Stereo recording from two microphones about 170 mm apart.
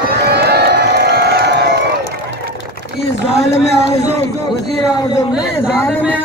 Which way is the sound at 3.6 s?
40° left (ahead or behind).